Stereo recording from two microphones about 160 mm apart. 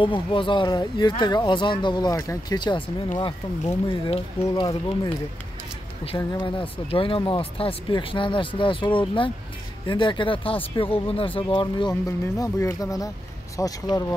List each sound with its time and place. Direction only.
0.0 s speech: 30° left (ahead or behind)